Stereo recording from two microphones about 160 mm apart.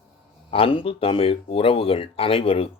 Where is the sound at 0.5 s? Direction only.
35° left (ahead or behind).